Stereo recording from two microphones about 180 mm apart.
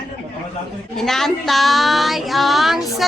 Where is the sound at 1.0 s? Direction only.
Centre (ahead or behind).